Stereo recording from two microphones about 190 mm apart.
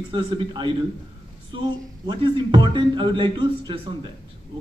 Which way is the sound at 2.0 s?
25° right (ahead or behind).